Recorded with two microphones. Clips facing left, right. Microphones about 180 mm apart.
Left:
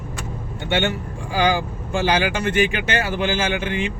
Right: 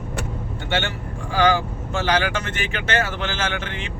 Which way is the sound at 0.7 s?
15° left (ahead or behind).